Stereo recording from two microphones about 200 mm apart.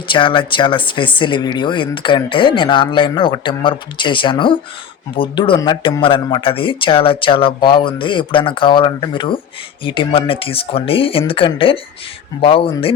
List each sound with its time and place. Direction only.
0.1 s speech: 25° left (ahead or behind)